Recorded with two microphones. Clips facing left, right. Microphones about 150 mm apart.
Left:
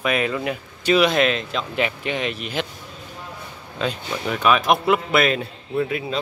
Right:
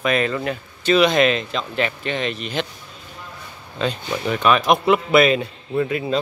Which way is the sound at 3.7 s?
Centre (ahead or behind).